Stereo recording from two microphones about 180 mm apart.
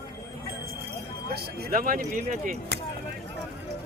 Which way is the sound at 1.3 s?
55° right (ahead or behind).